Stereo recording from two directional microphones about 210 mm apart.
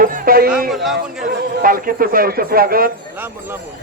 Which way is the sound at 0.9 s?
45° right (ahead or behind).